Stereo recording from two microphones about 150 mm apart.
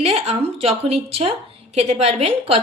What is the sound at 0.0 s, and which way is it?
A woman's voice, 45° right (ahead or behind).